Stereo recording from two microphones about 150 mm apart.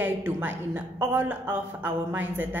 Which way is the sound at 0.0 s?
10° right (ahead or behind).